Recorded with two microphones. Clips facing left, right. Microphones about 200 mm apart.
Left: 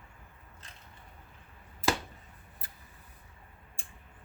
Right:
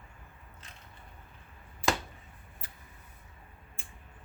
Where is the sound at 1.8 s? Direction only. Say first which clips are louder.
Even; 45° left (ahead or behind).